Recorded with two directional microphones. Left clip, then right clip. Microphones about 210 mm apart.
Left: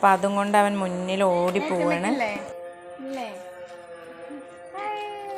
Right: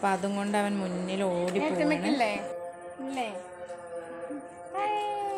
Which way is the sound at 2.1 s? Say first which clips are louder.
Left 1 dB; 25° left (ahead or behind).